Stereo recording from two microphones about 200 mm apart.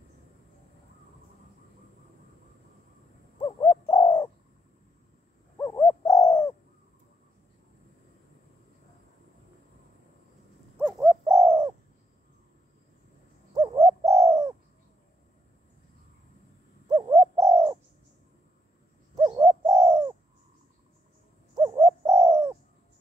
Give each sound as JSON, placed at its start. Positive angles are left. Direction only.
{"t": 3.3, "sound": "bird", "side_deg": 20}
{"t": 5.6, "sound": "bird", "side_deg": 15}
{"t": 10.9, "sound": "bird", "side_deg": -10}
{"t": 13.6, "sound": "bird", "side_deg": -15}
{"t": 16.9, "sound": "bird", "side_deg": -15}
{"t": 19.2, "sound": "bird", "side_deg": -15}
{"t": 21.5, "sound": "bird", "side_deg": -15}